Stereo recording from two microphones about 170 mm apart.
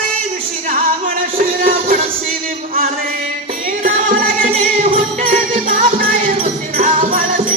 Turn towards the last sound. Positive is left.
turn(degrees=-55)  # may be behind; listen again after turning